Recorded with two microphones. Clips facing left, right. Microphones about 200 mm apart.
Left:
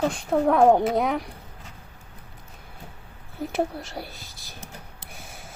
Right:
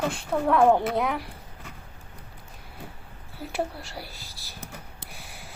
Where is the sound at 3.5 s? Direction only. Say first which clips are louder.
Left 3 dB; centre (ahead or behind).